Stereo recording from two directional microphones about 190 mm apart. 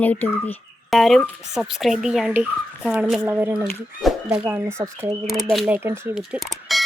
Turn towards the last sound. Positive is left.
turn(degrees=0)  # may be behind; listen again after turning